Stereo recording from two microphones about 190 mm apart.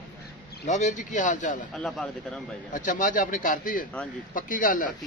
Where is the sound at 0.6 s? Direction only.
40° left (ahead or behind).